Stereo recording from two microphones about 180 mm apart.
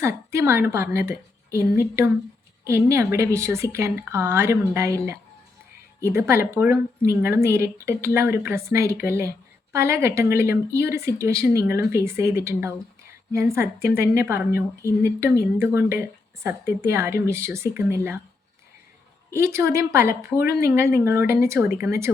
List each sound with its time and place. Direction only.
0.3 s a woman's voice: 15° right (ahead or behind)
19.3 s a woman's voice: 15° right (ahead or behind)